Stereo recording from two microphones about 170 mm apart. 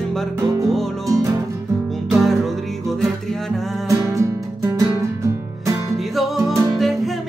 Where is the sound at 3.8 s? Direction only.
15° right (ahead or behind).